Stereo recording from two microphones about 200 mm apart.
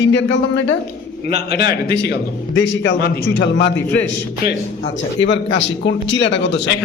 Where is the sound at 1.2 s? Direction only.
50° left (ahead or behind).